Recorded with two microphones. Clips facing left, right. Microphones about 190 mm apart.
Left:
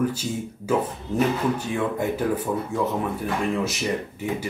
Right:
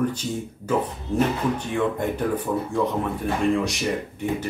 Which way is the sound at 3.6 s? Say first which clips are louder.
Right 1 dB; 5° left (ahead or behind).